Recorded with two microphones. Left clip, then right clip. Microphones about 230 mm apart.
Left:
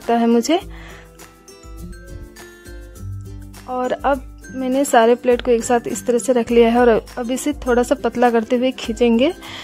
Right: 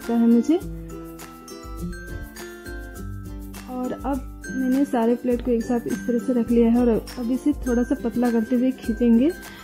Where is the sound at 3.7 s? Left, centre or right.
Left.